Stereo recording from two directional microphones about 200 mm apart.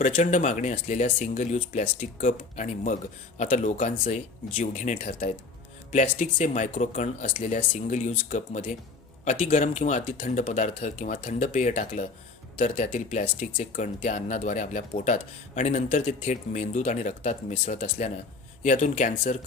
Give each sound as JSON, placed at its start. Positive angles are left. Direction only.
{"t": 0.0, "sound": "speech", "side_deg": 35}